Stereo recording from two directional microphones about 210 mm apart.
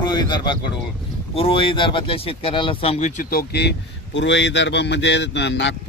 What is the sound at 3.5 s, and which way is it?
Speech, 55° left (ahead or behind).